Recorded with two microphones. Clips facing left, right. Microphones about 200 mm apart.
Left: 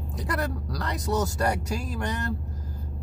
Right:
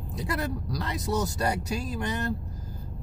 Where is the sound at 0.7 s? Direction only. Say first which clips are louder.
Left 2 dB; 20° right (ahead or behind).